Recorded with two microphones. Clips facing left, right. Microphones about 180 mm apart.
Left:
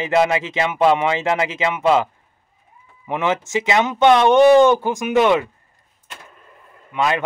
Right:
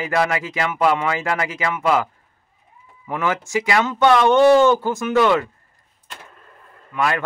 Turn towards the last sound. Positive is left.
turn(degrees=20)  # may be behind; listen again after turning